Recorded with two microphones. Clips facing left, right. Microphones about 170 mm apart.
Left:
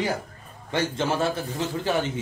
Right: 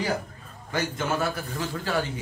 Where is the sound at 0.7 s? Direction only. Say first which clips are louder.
Left 3 dB; 25° left (ahead or behind).